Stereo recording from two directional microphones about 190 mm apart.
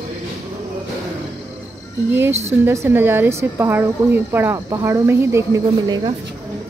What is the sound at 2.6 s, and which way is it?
Speech, 10° right (ahead or behind).